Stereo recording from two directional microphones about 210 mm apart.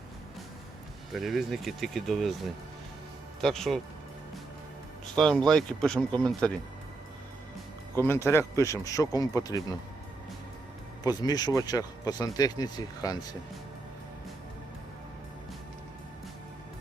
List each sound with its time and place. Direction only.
1.1 s speech: centre (ahead or behind)
5.1 s speech: 5° left (ahead or behind)
7.9 s speech: 10° left (ahead or behind)
11.0 s speech: 20° left (ahead or behind)